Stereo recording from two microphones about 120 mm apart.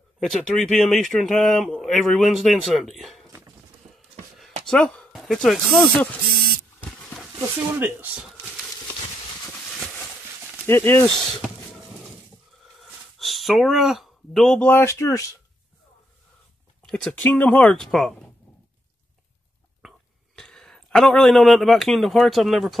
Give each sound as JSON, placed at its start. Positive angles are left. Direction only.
{"t": 0.2, "sound": "speech", "side_deg": 0}
{"t": 4.6, "sound": "speech", "side_deg": 5}
{"t": 7.3, "sound": "speech", "side_deg": -15}
{"t": 9.7, "sound": "a sound", "side_deg": 0}
{"t": 10.7, "sound": "speech", "side_deg": 15}
{"t": 13.2, "sound": "speech", "side_deg": 0}
{"t": 14.7, "sound": "speech", "side_deg": 25}
{"t": 16.8, "sound": "a sound", "side_deg": 5}
{"t": 17.1, "sound": "speech", "side_deg": 15}
{"t": 20.3, "sound": "speech", "side_deg": 5}